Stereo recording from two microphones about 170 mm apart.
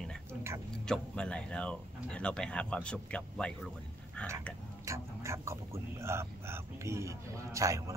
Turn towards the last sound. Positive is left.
turn(degrees=-20)  # may be behind; listen again after turning